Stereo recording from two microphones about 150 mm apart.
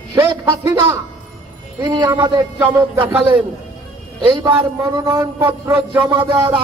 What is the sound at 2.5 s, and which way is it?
Music, 15° right (ahead or behind).